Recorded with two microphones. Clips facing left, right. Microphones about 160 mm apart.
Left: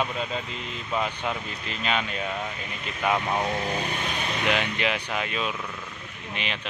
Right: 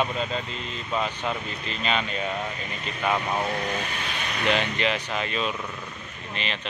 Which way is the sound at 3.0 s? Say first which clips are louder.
Left 1 dB; 5° left (ahead or behind).